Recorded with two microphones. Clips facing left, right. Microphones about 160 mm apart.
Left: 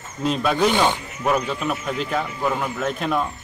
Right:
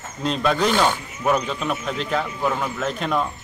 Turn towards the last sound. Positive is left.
turn(degrees=5)  # may be behind; listen again after turning